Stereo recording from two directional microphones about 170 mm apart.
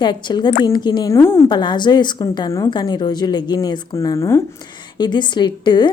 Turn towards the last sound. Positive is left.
turn(degrees=25)  # may be behind; listen again after turning